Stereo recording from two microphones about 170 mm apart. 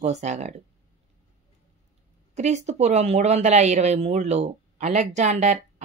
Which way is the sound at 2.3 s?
45° right (ahead or behind).